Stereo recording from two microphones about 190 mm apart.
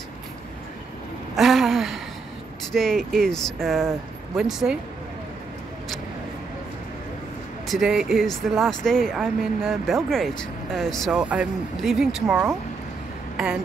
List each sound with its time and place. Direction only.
1.3 s a sound: centre (ahead or behind)
2.7 s speech: centre (ahead or behind)
7.6 s speech: centre (ahead or behind)